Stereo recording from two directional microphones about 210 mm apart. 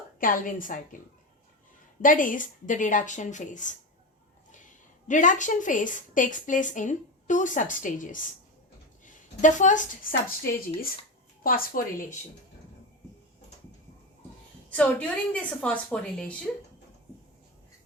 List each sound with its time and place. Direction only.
0.2 s a woman's voice: 40° left (ahead or behind)
2.0 s a woman's voice: 40° left (ahead or behind)
5.0 s a woman's voice: 35° left (ahead or behind)
14.7 s a woman's voice: 5° left (ahead or behind)